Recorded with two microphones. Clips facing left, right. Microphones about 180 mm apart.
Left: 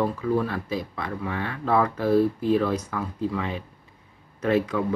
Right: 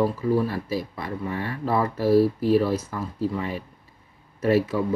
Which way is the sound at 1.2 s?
65° left (ahead or behind).